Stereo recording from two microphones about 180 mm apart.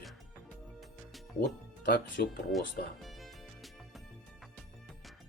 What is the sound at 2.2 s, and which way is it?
Speech, 60° left (ahead or behind).